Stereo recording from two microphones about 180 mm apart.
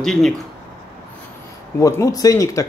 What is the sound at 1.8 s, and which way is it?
Speech, 15° left (ahead or behind).